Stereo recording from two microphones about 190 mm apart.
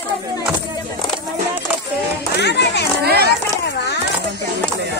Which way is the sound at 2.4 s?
60° left (ahead or behind).